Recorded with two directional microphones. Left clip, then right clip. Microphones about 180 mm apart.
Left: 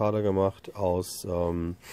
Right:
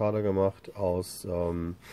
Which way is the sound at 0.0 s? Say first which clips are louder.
Left 1 dB; 35° left (ahead or behind).